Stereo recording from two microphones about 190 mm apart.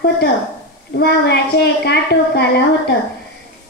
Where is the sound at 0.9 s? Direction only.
60° left (ahead or behind).